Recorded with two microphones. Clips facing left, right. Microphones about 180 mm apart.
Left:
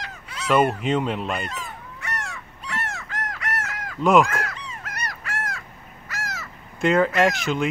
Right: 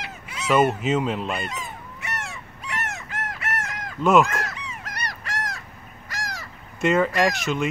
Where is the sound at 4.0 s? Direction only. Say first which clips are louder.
Left 1 dB; centre (ahead or behind).